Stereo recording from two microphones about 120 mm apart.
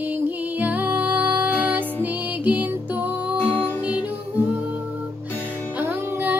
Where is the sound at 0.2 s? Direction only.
15° right (ahead or behind).